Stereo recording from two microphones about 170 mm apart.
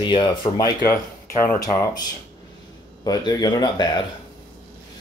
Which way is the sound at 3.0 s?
20° left (ahead or behind).